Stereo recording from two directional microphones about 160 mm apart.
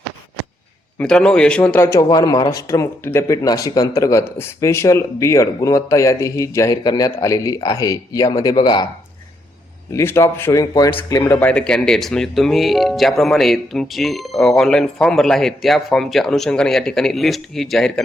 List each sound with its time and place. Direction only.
0.9 s speech: 5° left (ahead or behind); by 8.9 s 25° left (ahead or behind)
9.9 s speech: 15° left (ahead or behind)